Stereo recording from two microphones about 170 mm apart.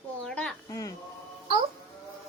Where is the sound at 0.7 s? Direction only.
20° left (ahead or behind).